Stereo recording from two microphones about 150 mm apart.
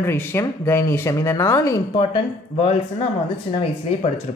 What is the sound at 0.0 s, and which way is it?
Speech, 15° left (ahead or behind).